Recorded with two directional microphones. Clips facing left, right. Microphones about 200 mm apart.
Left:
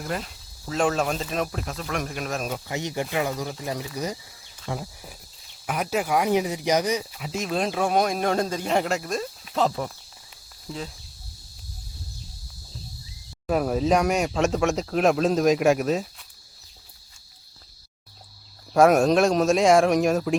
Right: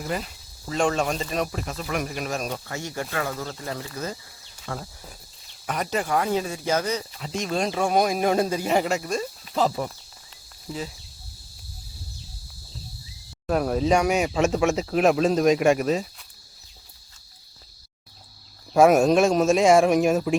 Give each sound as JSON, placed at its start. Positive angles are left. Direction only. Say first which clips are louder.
{"t": 0.0, "sound": "speech", "louder": "right 1 dB", "side_deg": 0}
{"t": 2.6, "sound": "speech", "louder": "left 3 dB", "side_deg": 20}
{"t": 13.5, "sound": "speech", "louder": "even", "side_deg": 0}
{"t": 18.7, "sound": "speech", "louder": "right 1 dB", "side_deg": 0}